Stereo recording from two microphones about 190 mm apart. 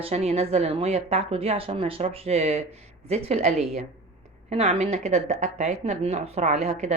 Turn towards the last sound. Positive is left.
turn(degrees=-35)  # may be behind; listen again after turning